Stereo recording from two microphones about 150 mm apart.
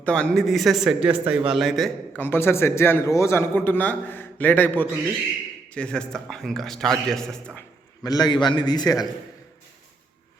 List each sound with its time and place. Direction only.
0.0 s a man's voice: 5° left (ahead or behind)
2.1 s a man's voice: 15° left (ahead or behind)
8.0 s a man's voice: 25° left (ahead or behind)